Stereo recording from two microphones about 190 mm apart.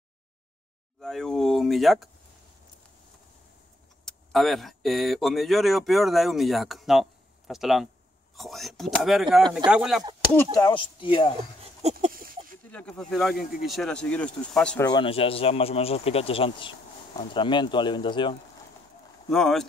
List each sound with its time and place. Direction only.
1.0 s speech: centre (ahead or behind)
4.0 s speech: centre (ahead or behind)
10.3 s speech: 20° left (ahead or behind)
11.6 s a sound: 35° right (ahead or behind)
12.7 s speech: 5° left (ahead or behind)
14.9 s speech: 25° left (ahead or behind)
19.3 s speech: centre (ahead or behind)